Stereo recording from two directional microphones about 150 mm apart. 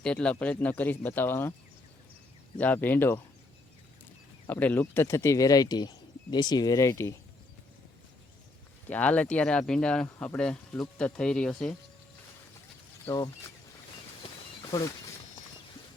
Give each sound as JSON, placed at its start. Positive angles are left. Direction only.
{"t": 0.0, "sound": "speech", "side_deg": 5}
{"t": 2.6, "sound": "speech", "side_deg": 10}
{"t": 4.4, "sound": "speech", "side_deg": 10}
{"t": 8.9, "sound": "speech", "side_deg": 10}
{"t": 13.1, "sound": "speech", "side_deg": 25}
{"t": 14.7, "sound": "speech", "side_deg": 25}